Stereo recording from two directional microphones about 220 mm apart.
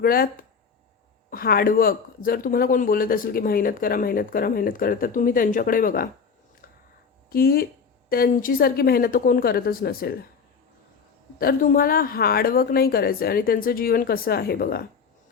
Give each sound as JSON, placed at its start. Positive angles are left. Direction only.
{"t": 0.0, "sound": "a woman's voice", "side_deg": 45}
{"t": 1.3, "sound": "speech", "side_deg": 45}
{"t": 7.3, "sound": "a woman's voice", "side_deg": 40}
{"t": 11.3, "sound": "a woman's voice", "side_deg": 40}